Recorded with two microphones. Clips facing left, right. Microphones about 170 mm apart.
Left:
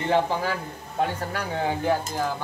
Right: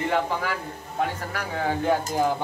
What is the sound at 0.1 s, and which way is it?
A man's voice, 30° left (ahead or behind).